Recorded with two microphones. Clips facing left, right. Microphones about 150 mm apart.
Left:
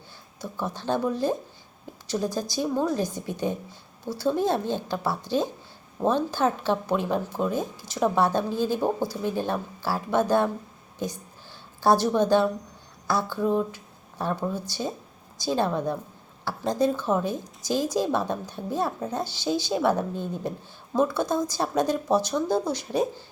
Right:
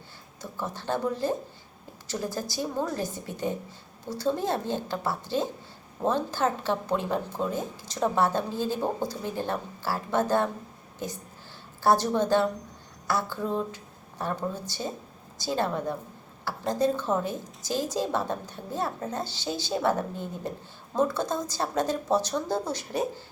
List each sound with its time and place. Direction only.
0.8 s speech: 15° left (ahead or behind)
11.8 s speech: 15° left (ahead or behind)